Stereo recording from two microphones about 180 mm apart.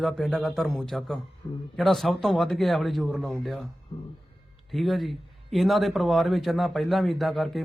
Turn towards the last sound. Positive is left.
turn(degrees=0)  # may be behind; listen again after turning